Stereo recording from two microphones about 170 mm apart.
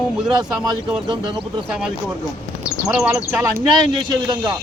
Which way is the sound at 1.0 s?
30° right (ahead or behind).